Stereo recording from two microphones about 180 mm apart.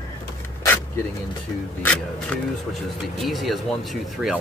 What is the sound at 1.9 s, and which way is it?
Speech, 5° left (ahead or behind).